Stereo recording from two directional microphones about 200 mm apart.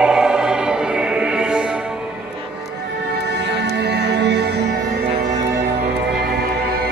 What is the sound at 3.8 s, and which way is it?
Music, 55° right (ahead or behind).